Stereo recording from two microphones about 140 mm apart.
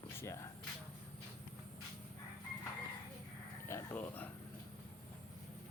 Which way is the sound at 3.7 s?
15° left (ahead or behind).